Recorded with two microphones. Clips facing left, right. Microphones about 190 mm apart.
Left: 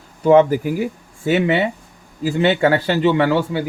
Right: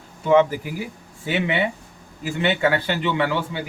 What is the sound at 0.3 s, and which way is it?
A man's voice, 40° left (ahead or behind).